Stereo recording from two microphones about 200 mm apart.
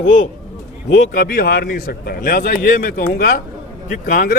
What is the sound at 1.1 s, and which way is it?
A man's voice, 45° left (ahead or behind).